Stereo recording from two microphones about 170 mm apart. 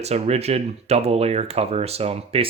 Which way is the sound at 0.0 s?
40° right (ahead or behind).